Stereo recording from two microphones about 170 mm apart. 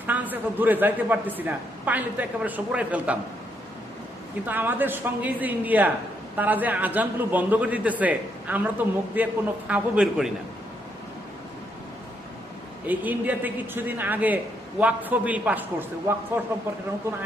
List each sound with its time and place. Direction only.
0.1 s a man's voice: 10° right (ahead or behind)
4.4 s a man's voice: 10° right (ahead or behind)
12.9 s a man's voice: 10° right (ahead or behind)